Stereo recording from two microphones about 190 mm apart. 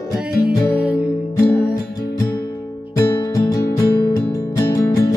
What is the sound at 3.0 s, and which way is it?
Music, 20° left (ahead or behind).